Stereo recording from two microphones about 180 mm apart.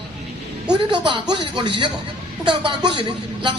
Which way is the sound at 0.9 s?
25° right (ahead or behind).